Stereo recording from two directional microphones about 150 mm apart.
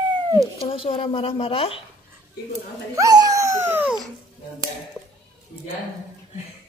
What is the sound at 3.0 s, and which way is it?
Dog, 25° right (ahead or behind).